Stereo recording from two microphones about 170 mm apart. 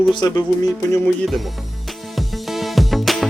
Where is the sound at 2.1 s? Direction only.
Centre (ahead or behind).